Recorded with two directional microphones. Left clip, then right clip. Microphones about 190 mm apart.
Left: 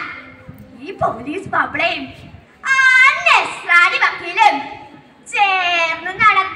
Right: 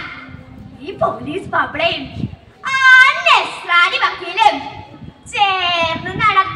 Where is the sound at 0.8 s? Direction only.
15° right (ahead or behind).